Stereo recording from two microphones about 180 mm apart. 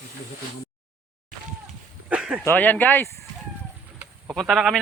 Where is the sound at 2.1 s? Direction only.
5° right (ahead or behind).